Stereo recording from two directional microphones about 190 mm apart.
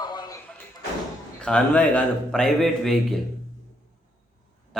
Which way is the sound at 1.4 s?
5° left (ahead or behind).